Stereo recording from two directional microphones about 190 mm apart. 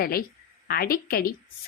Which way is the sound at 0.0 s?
50° left (ahead or behind).